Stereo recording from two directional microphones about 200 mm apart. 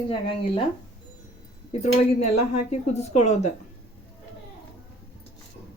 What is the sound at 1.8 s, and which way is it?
A woman's voice, 30° left (ahead or behind).